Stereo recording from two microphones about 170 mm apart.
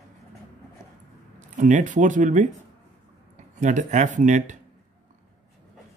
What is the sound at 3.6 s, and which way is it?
Speech, 45° right (ahead or behind).